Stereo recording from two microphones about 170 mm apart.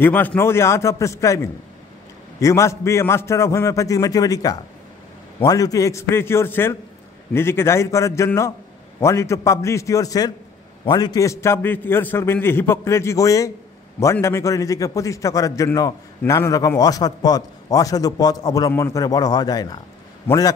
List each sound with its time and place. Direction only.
0.0 s a man's voice: 10° left (ahead or behind)